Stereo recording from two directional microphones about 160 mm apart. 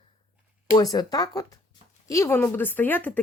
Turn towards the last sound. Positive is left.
turn(degrees=10)  # may be behind; listen again after turning